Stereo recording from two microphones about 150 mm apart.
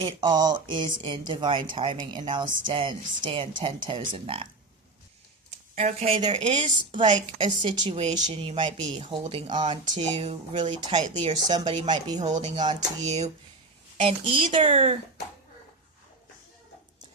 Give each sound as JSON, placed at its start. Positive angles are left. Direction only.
{"t": 0.0, "sound": "speech", "side_deg": -30}
{"t": 5.7, "sound": "speech", "side_deg": -45}
{"t": 7.3, "sound": "speech", "side_deg": -35}
{"t": 9.2, "sound": "speech", "side_deg": -50}
{"t": 9.6, "sound": "speech", "side_deg": -30}
{"t": 11.4, "sound": "speech", "side_deg": -30}
{"t": 12.2, "sound": "speech", "side_deg": -50}